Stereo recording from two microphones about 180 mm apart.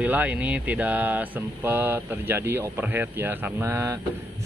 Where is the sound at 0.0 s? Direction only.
10° right (ahead or behind).